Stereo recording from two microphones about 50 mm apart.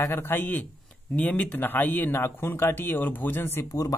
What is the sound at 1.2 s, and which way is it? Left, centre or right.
Speech, left.